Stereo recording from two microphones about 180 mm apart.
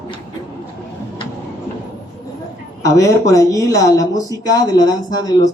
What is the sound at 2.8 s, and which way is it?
A woman's voice, 15° left (ahead or behind).